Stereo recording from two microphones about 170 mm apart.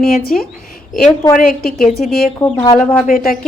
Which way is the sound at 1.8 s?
Centre (ahead or behind).